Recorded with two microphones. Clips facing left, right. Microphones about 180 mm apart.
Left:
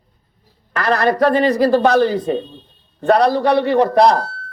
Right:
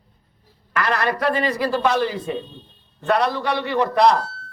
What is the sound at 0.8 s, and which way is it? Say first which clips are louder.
A man's voice: left 6 dB; 40° left (ahead or behind).